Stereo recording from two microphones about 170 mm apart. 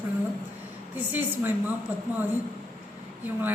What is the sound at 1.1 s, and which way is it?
Speech, 10° right (ahead or behind).